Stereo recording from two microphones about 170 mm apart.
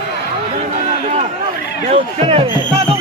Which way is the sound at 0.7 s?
45° right (ahead or behind).